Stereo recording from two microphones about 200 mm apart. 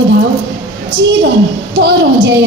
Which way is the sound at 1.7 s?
60° right (ahead or behind).